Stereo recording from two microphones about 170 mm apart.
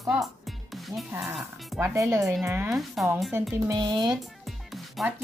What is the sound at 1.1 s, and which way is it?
A woman's voice, 15° right (ahead or behind).